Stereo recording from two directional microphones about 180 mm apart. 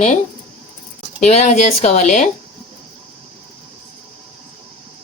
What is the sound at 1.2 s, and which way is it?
Speech, 40° left (ahead or behind).